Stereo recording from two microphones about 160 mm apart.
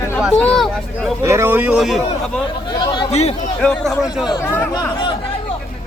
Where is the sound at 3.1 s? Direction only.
40° left (ahead or behind).